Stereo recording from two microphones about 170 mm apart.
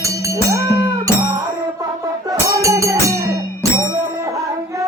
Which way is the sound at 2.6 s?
20° right (ahead or behind).